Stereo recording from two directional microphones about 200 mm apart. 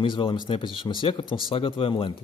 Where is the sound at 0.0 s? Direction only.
25° left (ahead or behind).